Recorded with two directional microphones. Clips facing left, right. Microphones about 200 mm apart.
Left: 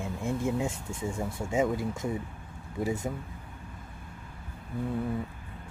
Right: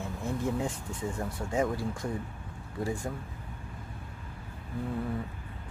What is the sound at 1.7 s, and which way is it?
Speech, 20° left (ahead or behind).